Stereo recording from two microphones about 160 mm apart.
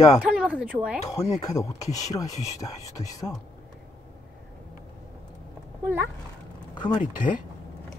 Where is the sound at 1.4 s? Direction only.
20° left (ahead or behind).